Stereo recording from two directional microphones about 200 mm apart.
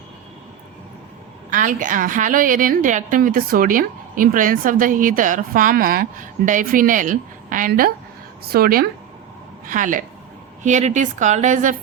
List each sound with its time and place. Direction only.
1.5 s a woman's voice: 40° right (ahead or behind)